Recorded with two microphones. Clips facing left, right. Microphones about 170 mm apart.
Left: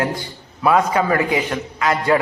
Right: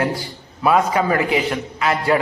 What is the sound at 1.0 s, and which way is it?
Speech, 20° right (ahead or behind).